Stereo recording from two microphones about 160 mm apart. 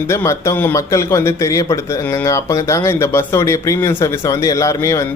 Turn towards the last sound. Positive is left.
turn(degrees=20)  # may be behind; listen again after turning